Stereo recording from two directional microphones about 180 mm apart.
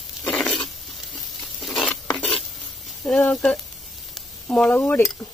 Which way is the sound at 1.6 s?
Centre (ahead or behind).